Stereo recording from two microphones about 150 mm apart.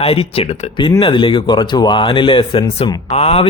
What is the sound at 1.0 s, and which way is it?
Speech, 35° left (ahead or behind).